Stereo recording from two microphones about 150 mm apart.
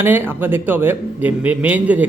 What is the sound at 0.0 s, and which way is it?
A man's voice, 15° right (ahead or behind).